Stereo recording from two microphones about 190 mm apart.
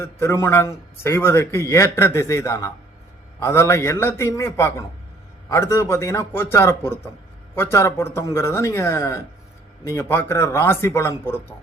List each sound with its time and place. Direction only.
0.0 s a man's voice: 15° left (ahead or behind)